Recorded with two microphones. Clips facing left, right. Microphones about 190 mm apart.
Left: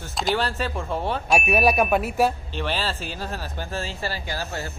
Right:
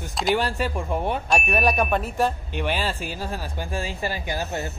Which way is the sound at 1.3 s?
10° left (ahead or behind).